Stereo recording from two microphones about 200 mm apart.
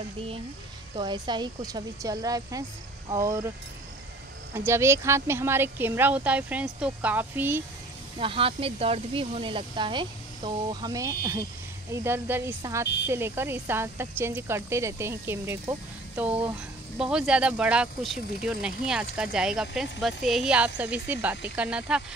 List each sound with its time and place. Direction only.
0.9 s speech: 20° right (ahead or behind)
4.6 s speech: 15° right (ahead or behind)
8.2 s speech: 25° right (ahead or behind); by 22.0 s 5° right (ahead or behind)